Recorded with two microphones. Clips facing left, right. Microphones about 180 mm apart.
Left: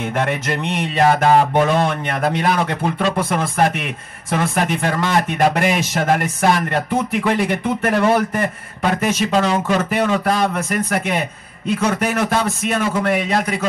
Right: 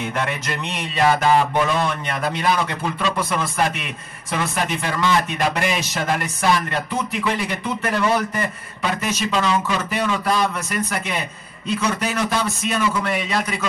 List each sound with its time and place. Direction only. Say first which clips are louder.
0.0 s a man's voice: left 4 dB; 55° left (ahead or behind)